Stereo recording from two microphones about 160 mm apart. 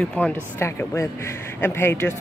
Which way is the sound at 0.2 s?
15° left (ahead or behind).